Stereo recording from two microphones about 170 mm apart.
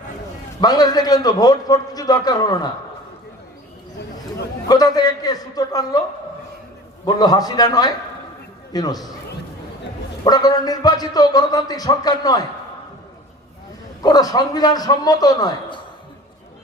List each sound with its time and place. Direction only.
0.6 s a man's voice: 25° left (ahead or behind)
4.7 s a man's voice: 20° left (ahead or behind)
7.0 s a man's voice: 25° left (ahead or behind)
10.2 s a man's voice: 20° left (ahead or behind)
14.0 s a man's voice: 25° left (ahead or behind)